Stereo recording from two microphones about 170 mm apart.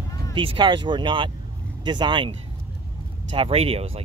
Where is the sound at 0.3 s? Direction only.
30° right (ahead or behind).